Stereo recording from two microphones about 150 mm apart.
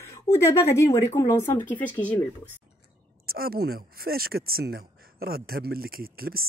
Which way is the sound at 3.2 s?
90° right.